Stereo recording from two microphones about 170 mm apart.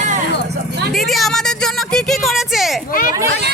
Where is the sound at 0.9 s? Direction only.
Centre (ahead or behind).